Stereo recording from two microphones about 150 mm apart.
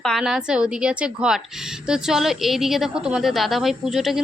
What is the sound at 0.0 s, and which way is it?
A woman's voice, centre (ahead or behind).